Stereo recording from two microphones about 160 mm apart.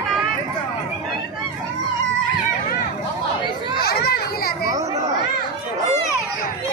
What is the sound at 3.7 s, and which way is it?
Children playing, 75° left (ahead or behind).